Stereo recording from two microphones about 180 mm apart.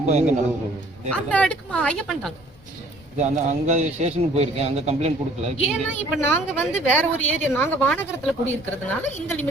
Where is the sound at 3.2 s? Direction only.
40° right (ahead or behind).